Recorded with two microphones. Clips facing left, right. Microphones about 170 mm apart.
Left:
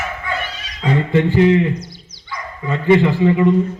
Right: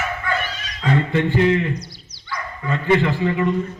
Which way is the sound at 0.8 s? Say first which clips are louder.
Left 3 dB; 20° left (ahead or behind).